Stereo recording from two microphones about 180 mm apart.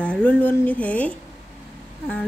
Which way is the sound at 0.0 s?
5° left (ahead or behind).